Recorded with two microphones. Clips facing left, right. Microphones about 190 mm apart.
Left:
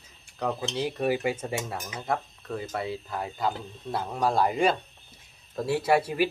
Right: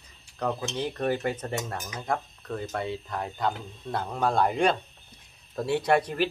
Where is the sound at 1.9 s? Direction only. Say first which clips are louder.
Even; 5° left (ahead or behind).